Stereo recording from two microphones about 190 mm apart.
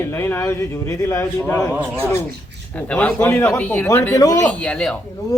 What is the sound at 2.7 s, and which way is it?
A man's voice, 10° left (ahead or behind).